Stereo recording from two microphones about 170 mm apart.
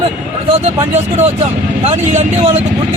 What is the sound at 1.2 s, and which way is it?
A man's voice, 40° right (ahead or behind).